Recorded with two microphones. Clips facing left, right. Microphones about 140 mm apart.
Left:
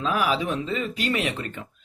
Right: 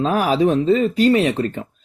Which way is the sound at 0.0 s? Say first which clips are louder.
Right 8 dB; 40° right (ahead or behind).